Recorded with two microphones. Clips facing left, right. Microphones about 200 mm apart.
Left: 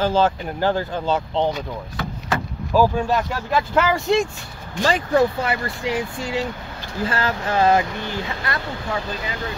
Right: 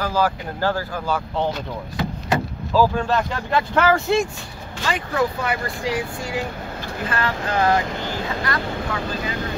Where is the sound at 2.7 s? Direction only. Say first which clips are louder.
Left 1 dB; 15° left (ahead or behind).